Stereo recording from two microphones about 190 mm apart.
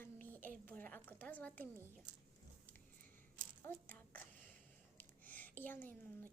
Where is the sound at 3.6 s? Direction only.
10° left (ahead or behind).